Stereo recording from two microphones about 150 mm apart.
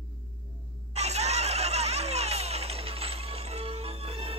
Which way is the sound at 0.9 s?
45° right (ahead or behind).